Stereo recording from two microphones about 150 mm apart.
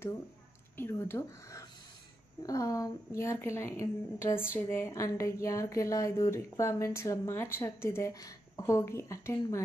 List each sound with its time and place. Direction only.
0.7 s speech: 15° left (ahead or behind)